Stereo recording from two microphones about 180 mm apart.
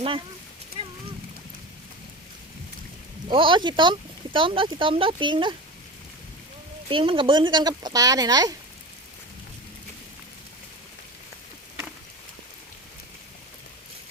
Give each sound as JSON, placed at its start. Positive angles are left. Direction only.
{"t": 3.2, "sound": "speech", "side_deg": -30}
{"t": 6.8, "sound": "speech", "side_deg": -30}